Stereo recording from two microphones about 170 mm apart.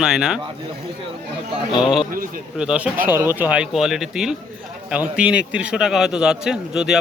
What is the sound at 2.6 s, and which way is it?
A man's voice, 5° right (ahead or behind).